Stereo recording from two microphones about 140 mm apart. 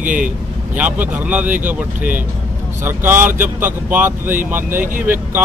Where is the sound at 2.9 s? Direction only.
15° right (ahead or behind).